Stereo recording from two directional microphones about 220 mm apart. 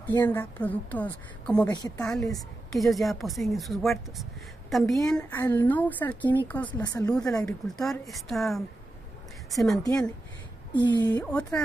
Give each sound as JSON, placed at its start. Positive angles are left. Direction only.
{"t": 0.1, "sound": "a woman's voice", "side_deg": 15}
{"t": 1.7, "sound": "a woman's voice", "side_deg": 15}
{"t": 2.0, "sound": "a woman's voice", "side_deg": 0}
{"t": 7.1, "sound": "speech", "side_deg": 5}
{"t": 10.7, "sound": "speech", "side_deg": 20}
{"t": 11.1, "sound": "a woman's voice", "side_deg": 5}